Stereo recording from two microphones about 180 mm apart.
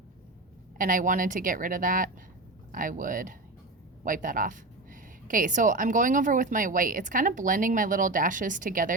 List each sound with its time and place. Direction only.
0.8 s a woman's voice: 50° right (ahead or behind)